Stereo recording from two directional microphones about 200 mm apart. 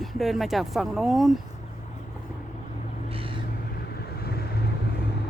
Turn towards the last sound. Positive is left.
turn(degrees=50)  # may be behind; listen again after turning